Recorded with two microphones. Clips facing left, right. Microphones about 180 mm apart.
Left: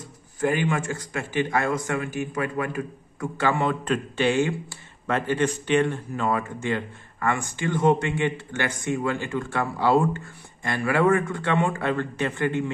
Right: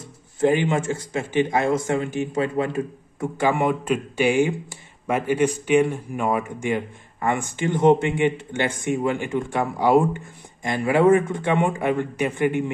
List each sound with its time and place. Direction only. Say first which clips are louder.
0.4 s a man's voice: right 4 dB; 20° right (ahead or behind)